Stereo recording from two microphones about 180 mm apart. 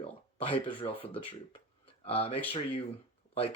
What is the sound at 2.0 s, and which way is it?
Speech, 30° left (ahead or behind).